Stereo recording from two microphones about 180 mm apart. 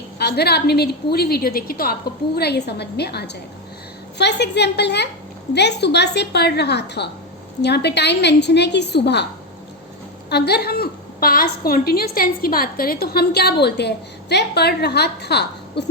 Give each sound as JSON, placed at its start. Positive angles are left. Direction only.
{"t": 0.2, "sound": "a woman's voice", "side_deg": 65}
{"t": 10.2, "sound": "a woman's voice", "side_deg": 65}